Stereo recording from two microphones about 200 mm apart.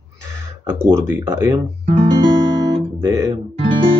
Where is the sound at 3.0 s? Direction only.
15° right (ahead or behind).